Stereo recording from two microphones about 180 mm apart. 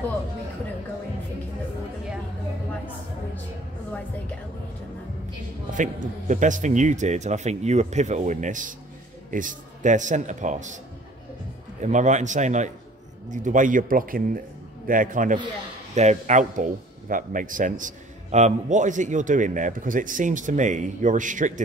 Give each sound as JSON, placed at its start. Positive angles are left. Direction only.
{"t": 5.7, "sound": "a man's voice", "side_deg": -45}
{"t": 11.8, "sound": "a man's voice", "side_deg": -40}